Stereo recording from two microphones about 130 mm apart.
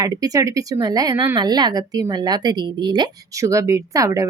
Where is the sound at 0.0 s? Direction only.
25° right (ahead or behind).